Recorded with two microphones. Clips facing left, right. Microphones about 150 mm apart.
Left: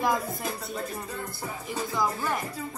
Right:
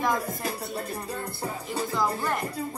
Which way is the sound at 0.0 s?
10° left (ahead or behind).